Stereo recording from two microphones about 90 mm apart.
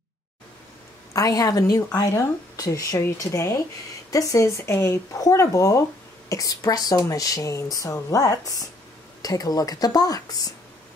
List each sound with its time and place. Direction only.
1.1 s a woman's voice: 40° left (ahead or behind)